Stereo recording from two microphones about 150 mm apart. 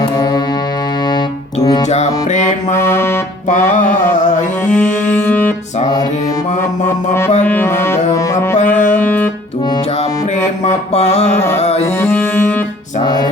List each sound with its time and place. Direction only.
0.2 s music: 25° left (ahead or behind)
1.6 s music: 25° left (ahead or behind)
2.3 s music: 55° left (ahead or behind)
2.7 s music: 15° left (ahead or behind)
4.6 s music: 10° left (ahead or behind)
7.4 s music: 10° left (ahead or behind)
10.6 s mantra: 50° left (ahead or behind)
11.6 s music: 45° left (ahead or behind)
11.9 s music: 15° left (ahead or behind)
13.0 s music: 25° left (ahead or behind)